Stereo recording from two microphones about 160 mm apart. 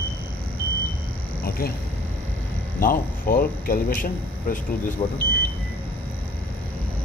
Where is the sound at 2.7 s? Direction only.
65° left (ahead or behind).